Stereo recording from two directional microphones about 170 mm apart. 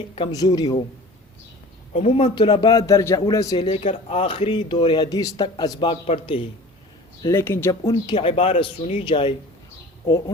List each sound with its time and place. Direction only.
0.2 s a man's voice: 25° left (ahead or behind)
1.9 s a man's voice: 40° left (ahead or behind)
7.2 s a man's voice: 15° left (ahead or behind)